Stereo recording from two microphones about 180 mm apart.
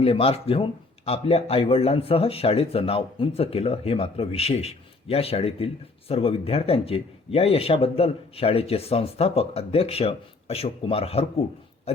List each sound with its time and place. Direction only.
0.0 s a man's voice: 35° left (ahead or behind)
11.9 s oink: 35° left (ahead or behind)